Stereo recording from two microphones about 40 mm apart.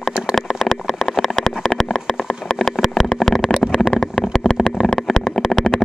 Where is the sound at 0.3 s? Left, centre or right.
Centre.